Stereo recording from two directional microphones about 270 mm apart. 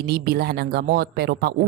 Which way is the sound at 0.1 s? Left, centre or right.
Right.